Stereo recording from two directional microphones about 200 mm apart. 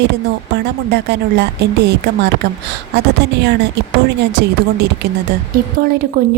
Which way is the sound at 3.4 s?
55° right (ahead or behind).